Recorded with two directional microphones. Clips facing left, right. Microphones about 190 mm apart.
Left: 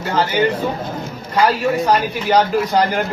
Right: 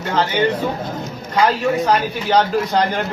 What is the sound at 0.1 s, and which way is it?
A man's voice, 10° left (ahead or behind).